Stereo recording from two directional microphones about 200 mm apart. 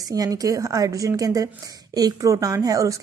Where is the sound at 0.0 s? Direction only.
20° right (ahead or behind).